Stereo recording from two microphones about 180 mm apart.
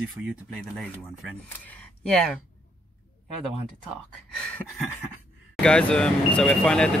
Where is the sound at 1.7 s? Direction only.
5° left (ahead or behind).